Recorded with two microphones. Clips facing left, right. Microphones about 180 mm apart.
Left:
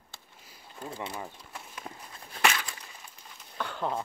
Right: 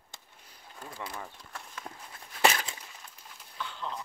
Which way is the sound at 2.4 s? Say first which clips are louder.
Right 2 dB; 25° right (ahead or behind).